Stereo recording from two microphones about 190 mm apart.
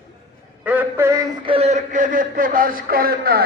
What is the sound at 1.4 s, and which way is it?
A man's voice, 30° right (ahead or behind).